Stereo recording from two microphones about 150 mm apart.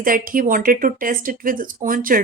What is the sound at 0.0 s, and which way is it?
A woman's voice, 65° right (ahead or behind).